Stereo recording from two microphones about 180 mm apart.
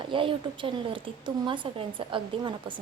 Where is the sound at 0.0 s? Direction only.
30° right (ahead or behind).